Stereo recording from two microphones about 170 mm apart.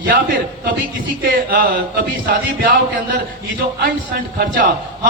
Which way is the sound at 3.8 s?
60° right (ahead or behind).